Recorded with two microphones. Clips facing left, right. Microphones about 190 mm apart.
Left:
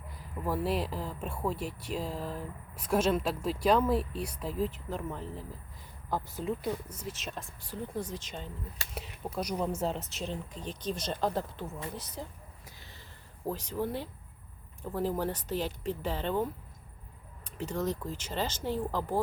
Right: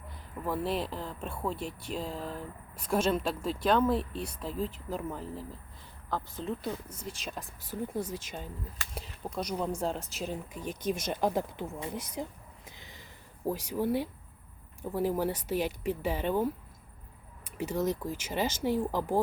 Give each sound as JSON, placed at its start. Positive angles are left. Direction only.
{"t": 0.4, "sound": "speech", "side_deg": 5}
{"t": 6.1, "sound": "speech", "side_deg": 10}
{"t": 9.0, "sound": "speech", "side_deg": 5}
{"t": 12.6, "sound": "a sound", "side_deg": -15}
{"t": 13.5, "sound": "speech", "side_deg": -10}